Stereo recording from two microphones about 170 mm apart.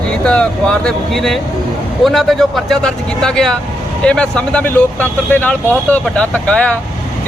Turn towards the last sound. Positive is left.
turn(degrees=5)  # may be behind; listen again after turning